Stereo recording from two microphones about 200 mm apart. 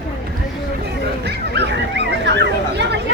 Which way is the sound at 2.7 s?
60° right (ahead or behind).